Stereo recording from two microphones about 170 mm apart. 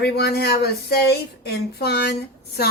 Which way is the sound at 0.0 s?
70° left (ahead or behind).